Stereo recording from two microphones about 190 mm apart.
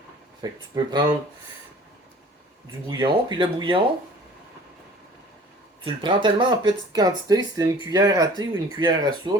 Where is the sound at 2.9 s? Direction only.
25° right (ahead or behind).